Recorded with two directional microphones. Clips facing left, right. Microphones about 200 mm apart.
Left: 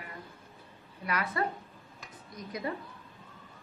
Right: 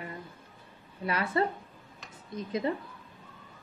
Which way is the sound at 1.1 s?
30° right (ahead or behind).